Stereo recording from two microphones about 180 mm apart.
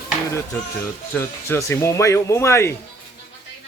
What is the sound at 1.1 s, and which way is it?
Speech, 15° left (ahead or behind).